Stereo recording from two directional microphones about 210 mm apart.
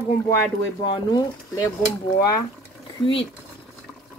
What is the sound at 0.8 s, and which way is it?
Speech, 20° left (ahead or behind).